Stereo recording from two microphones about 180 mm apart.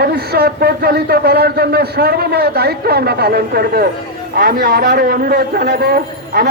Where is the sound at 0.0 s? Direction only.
60° right (ahead or behind).